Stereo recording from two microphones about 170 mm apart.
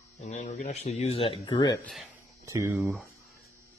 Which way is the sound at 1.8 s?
Centre (ahead or behind).